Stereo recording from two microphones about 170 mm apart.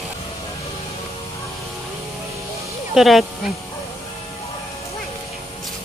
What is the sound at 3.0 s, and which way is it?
Speech, centre (ahead or behind).